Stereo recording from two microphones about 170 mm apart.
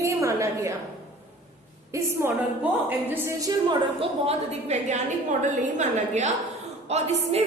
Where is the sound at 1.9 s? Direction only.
15° right (ahead or behind).